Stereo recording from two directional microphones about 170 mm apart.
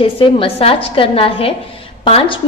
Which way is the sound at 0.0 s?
30° left (ahead or behind).